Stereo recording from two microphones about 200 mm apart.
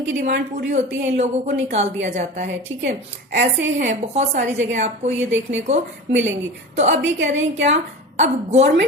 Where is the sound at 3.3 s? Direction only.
60° right (ahead or behind).